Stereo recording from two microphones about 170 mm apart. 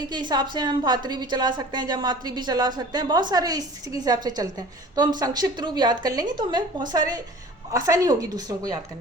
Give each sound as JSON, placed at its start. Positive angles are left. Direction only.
{"t": 0.1, "sound": "a woman's voice", "side_deg": -25}